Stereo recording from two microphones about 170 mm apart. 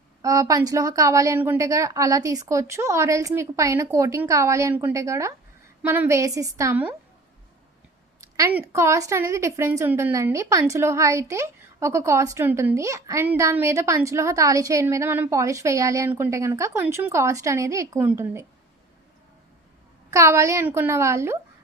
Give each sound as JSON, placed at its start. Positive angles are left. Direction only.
{"t": 0.2, "sound": "a woman's voice", "side_deg": -20}
{"t": 8.2, "sound": "a woman's voice", "side_deg": -15}
{"t": 20.1, "sound": "a woman's voice", "side_deg": -15}